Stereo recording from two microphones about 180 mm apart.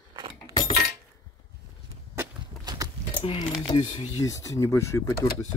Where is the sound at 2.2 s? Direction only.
20° right (ahead or behind).